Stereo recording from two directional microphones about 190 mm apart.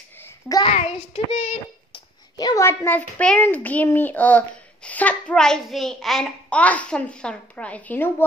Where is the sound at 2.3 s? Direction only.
20° left (ahead or behind).